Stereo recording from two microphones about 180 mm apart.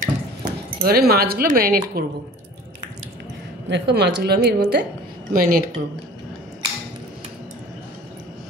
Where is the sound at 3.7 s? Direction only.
70° right (ahead or behind); by 5.6 s 55° right (ahead or behind).